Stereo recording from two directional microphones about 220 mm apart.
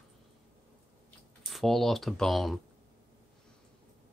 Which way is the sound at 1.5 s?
Centre (ahead or behind).